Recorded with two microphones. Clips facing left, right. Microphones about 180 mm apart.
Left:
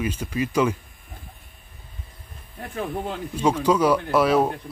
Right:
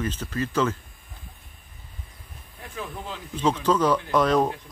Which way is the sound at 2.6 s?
60° left (ahead or behind).